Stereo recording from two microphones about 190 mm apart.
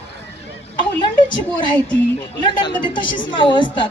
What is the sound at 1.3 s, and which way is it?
A woman's voice, 25° left (ahead or behind).